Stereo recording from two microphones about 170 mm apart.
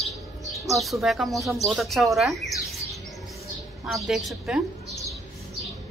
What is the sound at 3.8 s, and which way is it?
A woman's voice, centre (ahead or behind).